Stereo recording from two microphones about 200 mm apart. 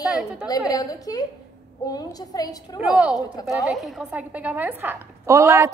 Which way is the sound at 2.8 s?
5° right (ahead or behind).